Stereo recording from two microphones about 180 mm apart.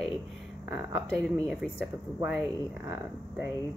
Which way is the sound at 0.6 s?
10° right (ahead or behind).